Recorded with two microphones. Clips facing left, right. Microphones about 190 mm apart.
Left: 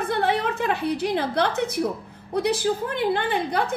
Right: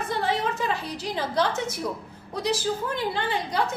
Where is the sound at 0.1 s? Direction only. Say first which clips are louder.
Left 3 dB; 60° left (ahead or behind).